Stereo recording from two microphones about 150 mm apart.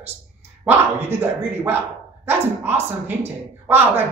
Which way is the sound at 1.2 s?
15° right (ahead or behind).